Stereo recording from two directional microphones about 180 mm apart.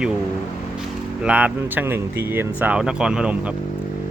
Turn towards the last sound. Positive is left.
turn(degrees=-5)  # may be behind; listen again after turning